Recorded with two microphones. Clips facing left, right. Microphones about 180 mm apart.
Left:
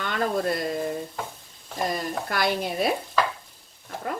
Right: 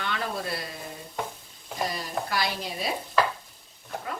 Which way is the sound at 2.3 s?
55° left (ahead or behind).